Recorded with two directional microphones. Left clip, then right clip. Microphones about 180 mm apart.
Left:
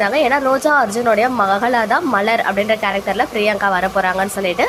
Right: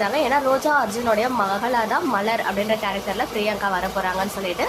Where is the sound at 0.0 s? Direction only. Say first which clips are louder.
Left 5 dB; 25° left (ahead or behind).